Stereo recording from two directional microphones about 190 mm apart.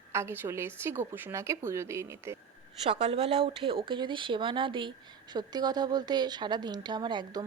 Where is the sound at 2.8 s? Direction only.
30° right (ahead or behind).